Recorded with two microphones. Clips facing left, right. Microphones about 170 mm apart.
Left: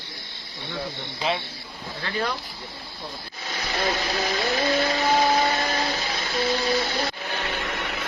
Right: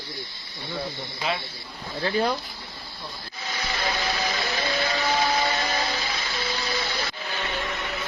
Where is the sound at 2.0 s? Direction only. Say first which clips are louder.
Right 4 dB; 30° right (ahead or behind).